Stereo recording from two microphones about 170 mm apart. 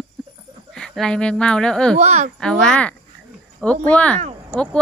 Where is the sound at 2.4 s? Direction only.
5° left (ahead or behind).